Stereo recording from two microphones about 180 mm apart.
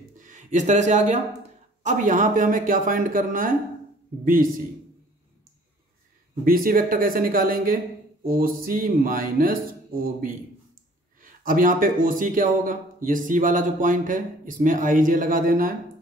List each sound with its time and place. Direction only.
0.2 s speech: 45° right (ahead or behind)
6.4 s speech: 50° right (ahead or behind)
11.1 s speech: 50° right (ahead or behind)